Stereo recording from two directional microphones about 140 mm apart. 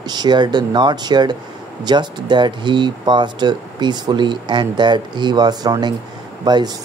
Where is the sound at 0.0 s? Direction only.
30° right (ahead or behind).